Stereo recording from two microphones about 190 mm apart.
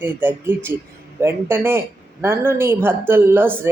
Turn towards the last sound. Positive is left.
turn(degrees=-10)  # may be behind; listen again after turning